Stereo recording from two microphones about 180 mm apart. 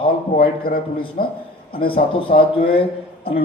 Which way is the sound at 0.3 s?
55° left (ahead or behind).